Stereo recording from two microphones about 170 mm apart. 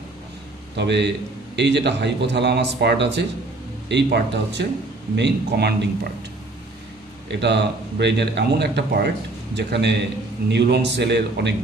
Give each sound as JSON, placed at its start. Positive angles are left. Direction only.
{"t": 0.7, "sound": "a man's voice", "side_deg": -90}
{"t": 7.2, "sound": "speech", "side_deg": -90}
{"t": 9.6, "sound": "speech", "side_deg": -90}